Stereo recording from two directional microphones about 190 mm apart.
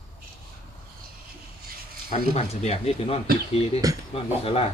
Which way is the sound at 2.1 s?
35° left (ahead or behind).